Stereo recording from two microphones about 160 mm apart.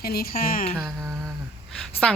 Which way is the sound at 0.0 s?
70° left (ahead or behind).